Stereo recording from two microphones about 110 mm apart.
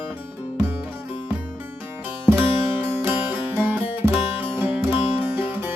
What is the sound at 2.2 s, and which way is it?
Music, 20° right (ahead or behind).